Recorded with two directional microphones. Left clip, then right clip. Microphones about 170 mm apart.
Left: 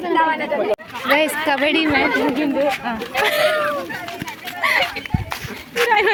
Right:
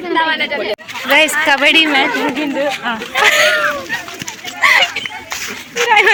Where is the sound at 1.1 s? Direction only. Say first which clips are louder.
Right 6 dB; 5° right (ahead or behind).